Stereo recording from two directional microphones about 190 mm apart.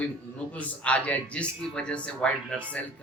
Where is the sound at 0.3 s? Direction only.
5° left (ahead or behind).